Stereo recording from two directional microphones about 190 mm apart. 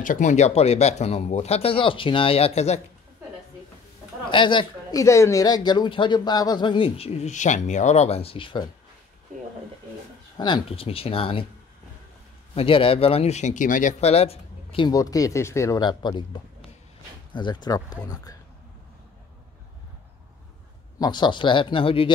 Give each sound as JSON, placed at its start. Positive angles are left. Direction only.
{"t": 0.0, "sound": "speech", "side_deg": 40}
{"t": 4.3, "sound": "speech", "side_deg": 25}
{"t": 10.3, "sound": "speech", "side_deg": 25}
{"t": 12.5, "sound": "speech", "side_deg": 30}
{"t": 17.3, "sound": "speech", "side_deg": 25}
{"t": 21.0, "sound": "speech", "side_deg": 25}